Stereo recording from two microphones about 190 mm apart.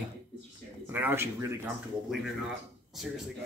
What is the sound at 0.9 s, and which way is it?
Speech, 10° right (ahead or behind).